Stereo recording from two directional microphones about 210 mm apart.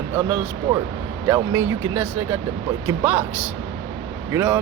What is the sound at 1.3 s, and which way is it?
Speech, 10° right (ahead or behind).